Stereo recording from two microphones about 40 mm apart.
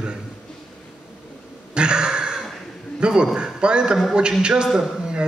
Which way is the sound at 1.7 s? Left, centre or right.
Right.